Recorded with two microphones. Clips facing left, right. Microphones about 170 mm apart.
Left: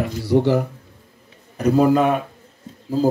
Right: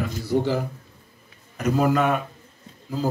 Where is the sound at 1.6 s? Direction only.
30° left (ahead or behind).